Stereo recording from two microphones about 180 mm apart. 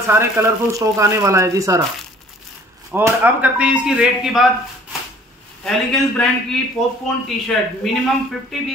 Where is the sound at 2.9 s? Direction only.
10° right (ahead or behind).